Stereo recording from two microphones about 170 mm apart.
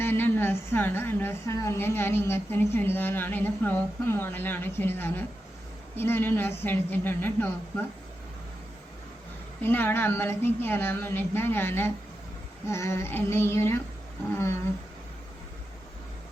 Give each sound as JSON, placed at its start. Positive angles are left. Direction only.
{"t": 0.0, "sound": "a woman's voice", "side_deg": 10}
{"t": 9.6, "sound": "a woman's voice", "side_deg": 10}